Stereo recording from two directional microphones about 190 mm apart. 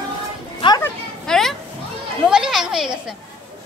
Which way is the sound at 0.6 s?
25° left (ahead or behind).